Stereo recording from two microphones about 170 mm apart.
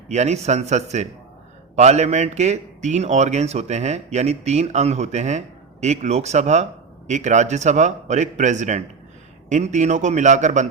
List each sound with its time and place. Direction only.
0.1 s a man's voice: 40° right (ahead or behind)